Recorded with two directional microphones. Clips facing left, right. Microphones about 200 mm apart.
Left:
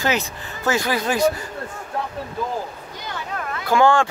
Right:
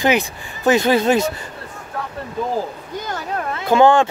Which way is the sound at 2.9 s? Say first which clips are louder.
Right 6 dB; 45° right (ahead or behind).